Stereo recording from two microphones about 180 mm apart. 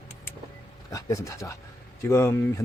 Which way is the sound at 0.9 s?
15° left (ahead or behind).